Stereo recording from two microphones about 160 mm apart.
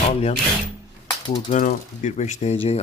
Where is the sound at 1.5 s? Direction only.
55° left (ahead or behind).